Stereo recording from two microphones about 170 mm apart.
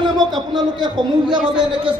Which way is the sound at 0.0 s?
25° right (ahead or behind).